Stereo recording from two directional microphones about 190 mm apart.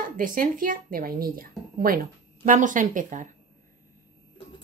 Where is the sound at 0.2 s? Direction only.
45° right (ahead or behind).